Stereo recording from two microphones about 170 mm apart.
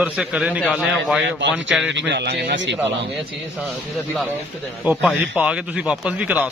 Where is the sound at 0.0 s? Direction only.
5° right (ahead or behind).